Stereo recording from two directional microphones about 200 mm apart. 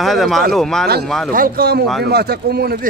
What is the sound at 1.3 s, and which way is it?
Speech, 45° right (ahead or behind).